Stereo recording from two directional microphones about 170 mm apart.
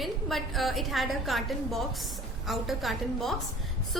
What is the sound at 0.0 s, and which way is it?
A woman's voice, centre (ahead or behind).